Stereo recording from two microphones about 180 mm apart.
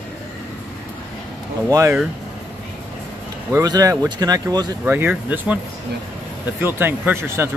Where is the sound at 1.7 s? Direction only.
15° right (ahead or behind).